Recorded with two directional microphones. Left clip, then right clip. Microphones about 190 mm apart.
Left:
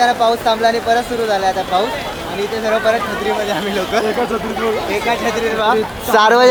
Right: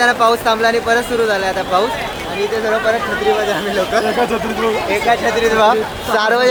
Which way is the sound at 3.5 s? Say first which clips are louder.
Right 2 dB; 30° left (ahead or behind).